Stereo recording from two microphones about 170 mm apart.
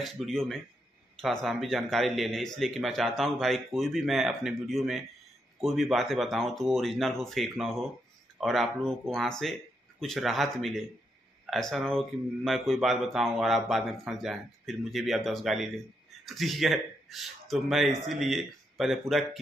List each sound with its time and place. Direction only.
0.0 s speech: centre (ahead or behind)